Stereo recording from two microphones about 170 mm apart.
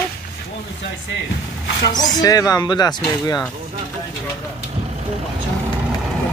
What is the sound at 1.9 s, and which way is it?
Speech, 25° left (ahead or behind).